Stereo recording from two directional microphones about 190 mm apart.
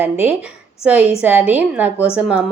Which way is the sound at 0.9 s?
5° right (ahead or behind).